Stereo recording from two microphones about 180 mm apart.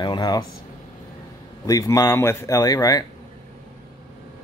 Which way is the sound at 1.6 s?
20° left (ahead or behind).